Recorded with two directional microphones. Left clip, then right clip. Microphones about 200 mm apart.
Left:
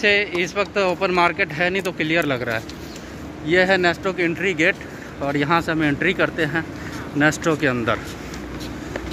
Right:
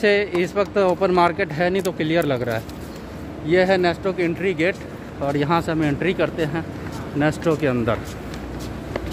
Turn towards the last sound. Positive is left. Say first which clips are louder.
# even
turn(degrees=-5)  # may be behind; listen again after turning